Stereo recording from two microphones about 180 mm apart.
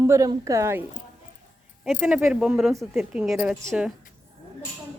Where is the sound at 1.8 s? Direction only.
5° right (ahead or behind).